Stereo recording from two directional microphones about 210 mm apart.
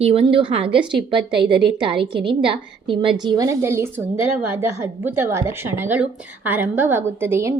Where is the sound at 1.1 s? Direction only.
25° right (ahead or behind).